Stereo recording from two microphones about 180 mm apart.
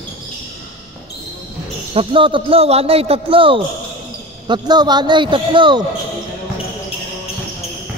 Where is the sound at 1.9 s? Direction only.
30° right (ahead or behind).